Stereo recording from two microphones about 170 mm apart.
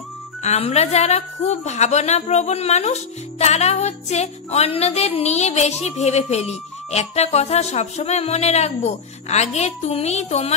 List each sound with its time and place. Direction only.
0.4 s a woman's voice: 40° left (ahead or behind)